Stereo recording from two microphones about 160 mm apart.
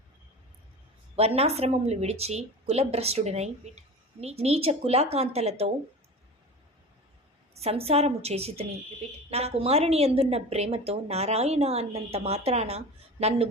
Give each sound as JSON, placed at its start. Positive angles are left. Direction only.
{"t": 1.1, "sound": "a woman's voice", "side_deg": -40}
{"t": 7.5, "sound": "a woman's voice", "side_deg": -40}